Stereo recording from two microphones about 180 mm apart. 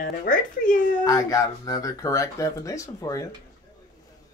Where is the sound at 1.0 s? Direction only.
20° left (ahead or behind).